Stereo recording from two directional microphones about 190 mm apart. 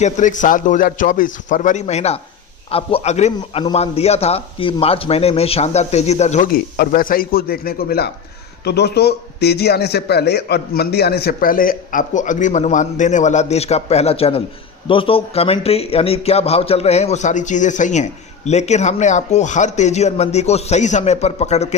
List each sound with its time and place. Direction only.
0.0 s speech: 40° left (ahead or behind)